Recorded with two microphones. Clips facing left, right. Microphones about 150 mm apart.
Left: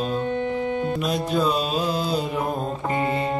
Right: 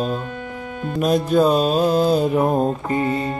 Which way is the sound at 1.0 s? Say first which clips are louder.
Right 11 dB; 50° right (ahead or behind).